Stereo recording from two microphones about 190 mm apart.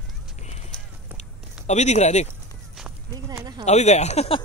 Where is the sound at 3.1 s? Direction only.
20° right (ahead or behind).